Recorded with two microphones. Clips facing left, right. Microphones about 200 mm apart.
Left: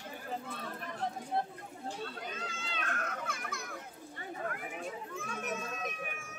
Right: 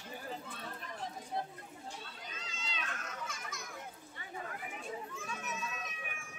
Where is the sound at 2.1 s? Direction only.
55° left (ahead or behind).